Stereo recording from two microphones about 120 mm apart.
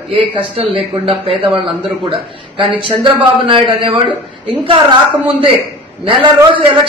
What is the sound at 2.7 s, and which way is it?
A man's voice, 45° right (ahead or behind).